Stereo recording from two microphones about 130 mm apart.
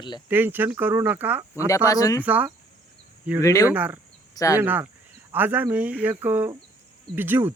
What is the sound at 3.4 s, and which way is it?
Speech, 25° left (ahead or behind).